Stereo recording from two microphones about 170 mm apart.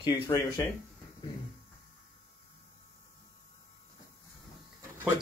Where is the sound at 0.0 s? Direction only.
20° left (ahead or behind).